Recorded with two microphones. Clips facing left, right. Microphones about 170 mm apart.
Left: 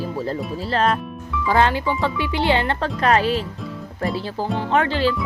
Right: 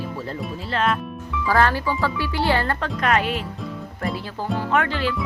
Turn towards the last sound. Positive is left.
turn(degrees=30)  # may be behind; listen again after turning